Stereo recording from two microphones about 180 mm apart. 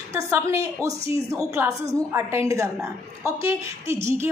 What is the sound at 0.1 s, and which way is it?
A woman's voice, 15° right (ahead or behind).